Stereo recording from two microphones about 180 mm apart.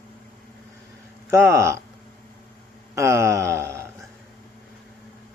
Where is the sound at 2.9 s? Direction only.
15° right (ahead or behind).